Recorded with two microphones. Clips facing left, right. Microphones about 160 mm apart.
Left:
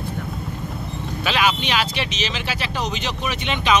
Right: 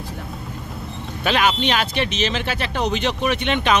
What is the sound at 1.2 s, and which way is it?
Speech, 50° right (ahead or behind).